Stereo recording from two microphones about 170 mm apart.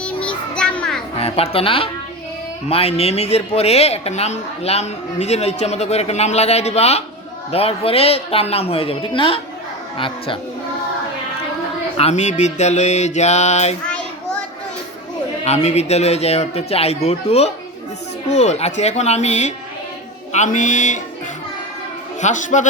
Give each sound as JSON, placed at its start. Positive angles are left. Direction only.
{"t": 0.0, "sound": "child singing", "side_deg": 5}
{"t": 1.2, "sound": "speech", "side_deg": 35}
{"t": 11.9, "sound": "speech", "side_deg": 40}
{"t": 15.4, "sound": "a man's voice", "side_deg": 40}
{"t": 22.2, "sound": "a man's voice", "side_deg": 45}